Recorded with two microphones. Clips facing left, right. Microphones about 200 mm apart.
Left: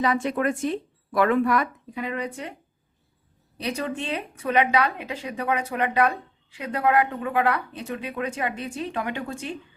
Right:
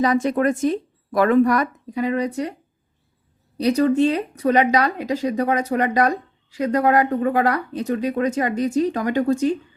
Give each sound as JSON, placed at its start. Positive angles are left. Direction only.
{"t": 0.0, "sound": "speech", "side_deg": -40}
{"t": 3.6, "sound": "speech", "side_deg": -40}